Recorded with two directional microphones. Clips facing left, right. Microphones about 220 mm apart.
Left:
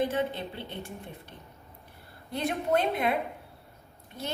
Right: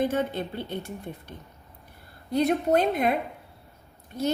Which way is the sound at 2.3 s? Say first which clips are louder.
Right 6 dB; 40° right (ahead or behind).